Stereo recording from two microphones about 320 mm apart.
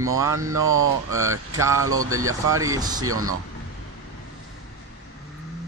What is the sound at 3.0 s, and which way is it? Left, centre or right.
Speech, right.